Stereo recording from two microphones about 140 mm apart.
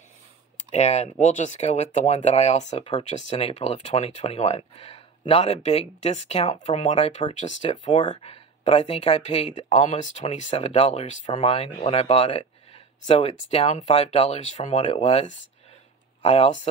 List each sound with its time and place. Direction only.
0.7 s speech: 50° left (ahead or behind)
7.7 s speech: 35° left (ahead or behind)